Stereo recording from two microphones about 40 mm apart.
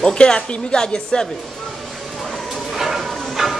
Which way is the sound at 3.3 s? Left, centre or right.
Centre.